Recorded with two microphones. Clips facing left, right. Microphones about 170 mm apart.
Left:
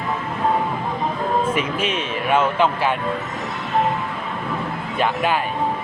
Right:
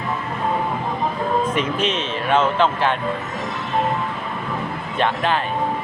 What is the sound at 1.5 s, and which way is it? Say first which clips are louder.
Speech: right 1 dB; 10° left (ahead or behind).